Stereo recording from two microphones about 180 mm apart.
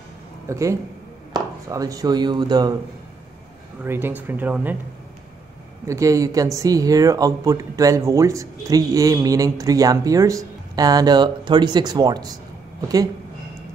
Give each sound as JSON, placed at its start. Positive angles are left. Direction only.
{"t": 0.5, "sound": "speech", "side_deg": -15}
{"t": 3.8, "sound": "speech", "side_deg": -10}
{"t": 5.9, "sound": "speech", "side_deg": -15}